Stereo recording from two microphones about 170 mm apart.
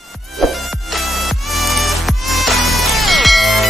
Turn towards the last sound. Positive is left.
turn(degrees=0)  # may be behind; listen again after turning